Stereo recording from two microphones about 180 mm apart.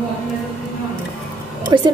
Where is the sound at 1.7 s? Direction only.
25° right (ahead or behind).